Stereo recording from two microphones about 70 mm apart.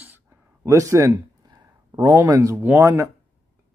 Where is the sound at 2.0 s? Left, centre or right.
Right.